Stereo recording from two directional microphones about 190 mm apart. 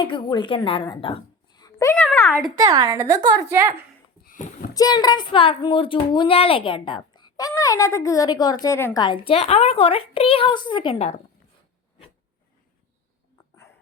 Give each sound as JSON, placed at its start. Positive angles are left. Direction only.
{"t": 0.0, "sound": "a woman's voice", "side_deg": 25}
{"t": 2.0, "sound": "speech", "side_deg": 0}
{"t": 2.6, "sound": "a woman's voice", "side_deg": -20}
{"t": 4.3, "sound": "a sound", "side_deg": 45}
{"t": 4.7, "sound": "speech", "side_deg": 20}